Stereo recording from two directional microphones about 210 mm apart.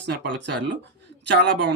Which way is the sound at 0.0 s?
55° right (ahead or behind).